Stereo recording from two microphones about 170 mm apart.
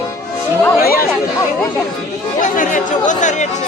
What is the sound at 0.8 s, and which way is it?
Chatter, 60° left (ahead or behind).